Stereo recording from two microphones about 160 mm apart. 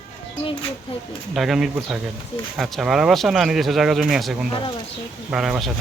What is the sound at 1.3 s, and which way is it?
Speech, centre (ahead or behind).